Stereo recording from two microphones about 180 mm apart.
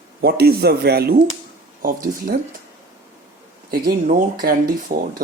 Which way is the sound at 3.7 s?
55° right (ahead or behind).